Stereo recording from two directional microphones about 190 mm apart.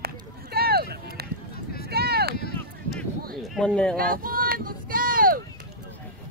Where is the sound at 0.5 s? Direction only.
55° right (ahead or behind).